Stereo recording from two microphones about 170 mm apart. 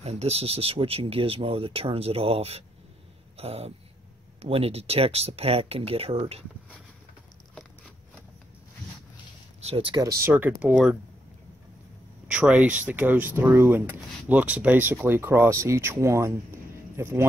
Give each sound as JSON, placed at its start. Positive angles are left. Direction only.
{"t": 0.0, "sound": "speech", "side_deg": -40}
{"t": 7.5, "sound": "a sound", "side_deg": 0}
{"t": 9.6, "sound": "speech", "side_deg": -35}
{"t": 10.2, "sound": "speech", "side_deg": -10}
{"t": 12.3, "sound": "speech", "side_deg": -5}